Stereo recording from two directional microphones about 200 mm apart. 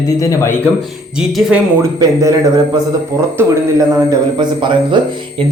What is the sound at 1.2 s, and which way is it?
Speech, 5° right (ahead or behind).